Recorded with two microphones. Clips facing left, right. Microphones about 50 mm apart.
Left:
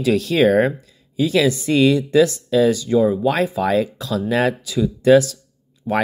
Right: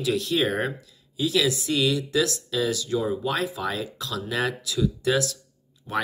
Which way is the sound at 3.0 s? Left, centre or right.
Centre.